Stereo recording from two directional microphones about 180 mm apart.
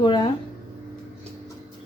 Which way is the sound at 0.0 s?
25° left (ahead or behind).